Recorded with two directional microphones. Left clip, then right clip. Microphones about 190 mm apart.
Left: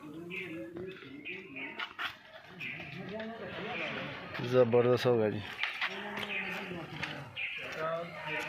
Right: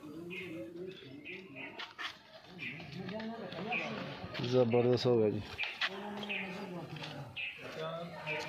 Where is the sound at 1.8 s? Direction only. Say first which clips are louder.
Left 5 dB; 20° left (ahead or behind).